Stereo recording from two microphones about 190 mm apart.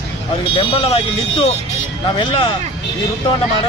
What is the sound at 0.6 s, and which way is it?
Speech, 30° left (ahead or behind).